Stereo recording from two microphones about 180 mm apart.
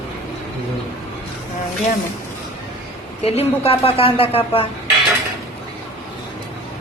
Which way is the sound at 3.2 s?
35° left (ahead or behind).